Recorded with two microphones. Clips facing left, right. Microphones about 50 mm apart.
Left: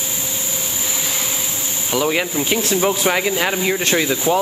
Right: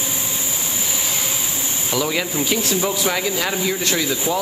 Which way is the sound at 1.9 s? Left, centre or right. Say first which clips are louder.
Left 3 dB; left.